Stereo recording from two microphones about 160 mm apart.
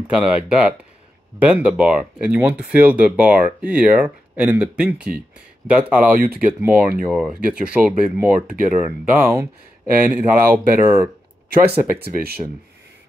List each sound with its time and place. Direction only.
0.1 s speech: 5° right (ahead or behind)
12.0 s speech: 75° right (ahead or behind)